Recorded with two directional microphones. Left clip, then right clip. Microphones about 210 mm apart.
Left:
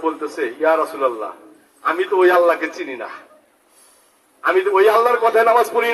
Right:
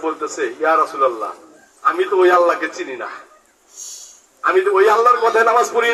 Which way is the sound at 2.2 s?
35° left (ahead or behind).